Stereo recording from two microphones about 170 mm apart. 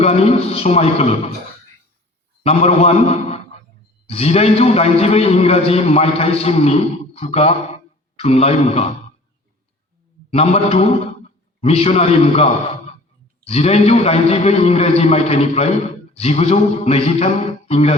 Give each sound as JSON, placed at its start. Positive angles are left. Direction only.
{"t": 0.0, "sound": "a man's voice", "side_deg": 35}
{"t": 2.4, "sound": "a man's voice", "side_deg": 35}
{"t": 10.3, "sound": "a man's voice", "side_deg": 35}